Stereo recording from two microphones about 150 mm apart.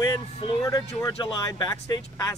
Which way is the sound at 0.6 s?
20° left (ahead or behind).